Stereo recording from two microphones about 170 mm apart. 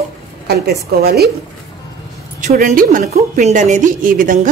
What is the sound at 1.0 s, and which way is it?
Speech, 70° right (ahead or behind).